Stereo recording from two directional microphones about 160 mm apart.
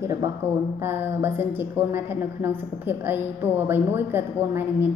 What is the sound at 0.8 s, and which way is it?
A woman's voice, 15° right (ahead or behind).